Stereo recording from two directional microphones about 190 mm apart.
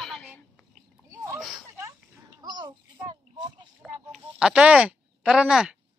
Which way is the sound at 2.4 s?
25° right (ahead or behind).